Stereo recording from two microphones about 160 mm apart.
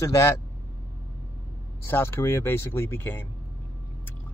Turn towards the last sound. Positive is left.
turn(degrees=15)  # may be behind; listen again after turning